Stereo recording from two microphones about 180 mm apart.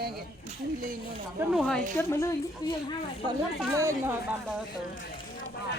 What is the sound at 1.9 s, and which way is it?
Speech, 15° left (ahead or behind).